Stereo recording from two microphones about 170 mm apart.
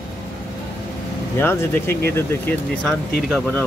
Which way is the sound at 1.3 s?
15° left (ahead or behind).